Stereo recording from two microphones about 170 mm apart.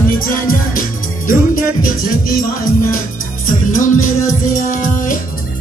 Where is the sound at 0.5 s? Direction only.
55° left (ahead or behind).